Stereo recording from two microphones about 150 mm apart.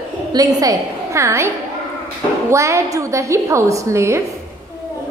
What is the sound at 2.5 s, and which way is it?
A woman's voice, 20° right (ahead or behind).